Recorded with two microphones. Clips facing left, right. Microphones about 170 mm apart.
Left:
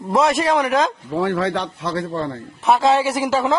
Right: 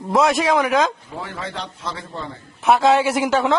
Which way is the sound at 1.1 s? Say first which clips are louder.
Left 10 dB; 65° left (ahead or behind).